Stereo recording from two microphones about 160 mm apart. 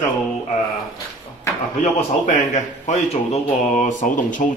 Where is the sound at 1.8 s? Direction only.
50° left (ahead or behind).